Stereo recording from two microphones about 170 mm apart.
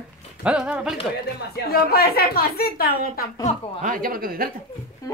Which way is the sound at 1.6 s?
65° left (ahead or behind).